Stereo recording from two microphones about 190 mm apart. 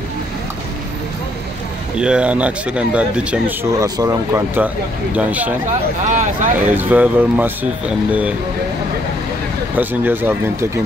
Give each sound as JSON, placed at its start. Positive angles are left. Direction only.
{"t": 2.0, "sound": "speech", "side_deg": -5}
{"t": 3.8, "sound": "speech", "side_deg": -15}
{"t": 6.0, "sound": "speech", "side_deg": -40}
{"t": 6.7, "sound": "speech", "side_deg": -10}
{"t": 9.8, "sound": "speech", "side_deg": -10}